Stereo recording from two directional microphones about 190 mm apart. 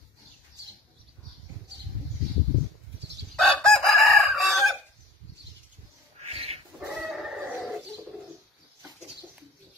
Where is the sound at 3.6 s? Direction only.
Centre (ahead or behind).